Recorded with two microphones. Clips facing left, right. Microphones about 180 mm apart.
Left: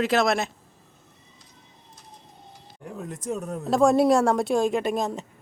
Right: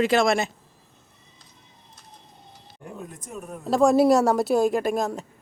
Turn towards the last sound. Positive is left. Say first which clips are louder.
# right 1 dB
turn(degrees=0)  # may be behind; listen again after turning